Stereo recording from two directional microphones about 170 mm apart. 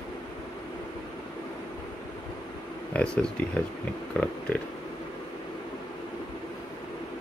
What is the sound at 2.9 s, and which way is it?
Speech, 5° left (ahead or behind).